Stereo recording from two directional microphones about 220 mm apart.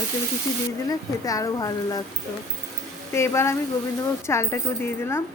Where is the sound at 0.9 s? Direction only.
15° left (ahead or behind).